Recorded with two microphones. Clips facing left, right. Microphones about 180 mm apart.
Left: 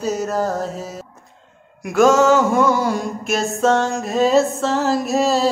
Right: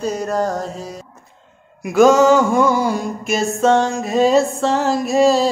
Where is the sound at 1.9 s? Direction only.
Centre (ahead or behind).